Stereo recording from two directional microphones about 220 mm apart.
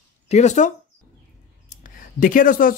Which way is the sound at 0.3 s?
30° left (ahead or behind).